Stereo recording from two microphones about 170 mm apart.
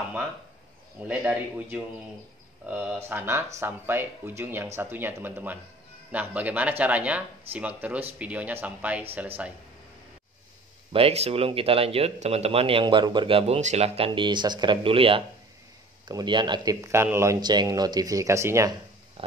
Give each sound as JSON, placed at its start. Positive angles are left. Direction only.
{"t": 1.0, "sound": "speech", "side_deg": -10}
{"t": 10.9, "sound": "speech", "side_deg": -35}